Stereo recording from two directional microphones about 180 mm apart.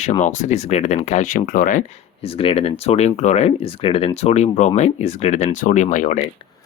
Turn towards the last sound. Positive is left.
turn(degrees=45)  # may be behind; listen again after turning